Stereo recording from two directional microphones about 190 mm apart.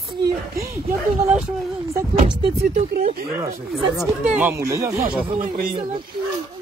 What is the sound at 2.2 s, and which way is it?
Speech, 35° right (ahead or behind).